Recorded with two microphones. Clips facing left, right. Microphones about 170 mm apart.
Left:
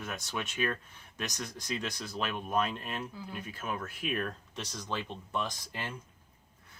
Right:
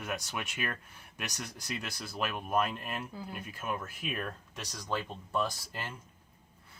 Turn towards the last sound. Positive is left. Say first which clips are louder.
# right 2 dB
turn(degrees=-5)  # may be behind; listen again after turning